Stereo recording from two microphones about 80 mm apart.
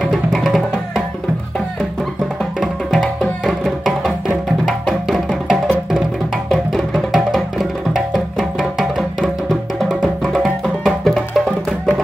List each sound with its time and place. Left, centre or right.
0.0 s music: centre
2.6 s music: centre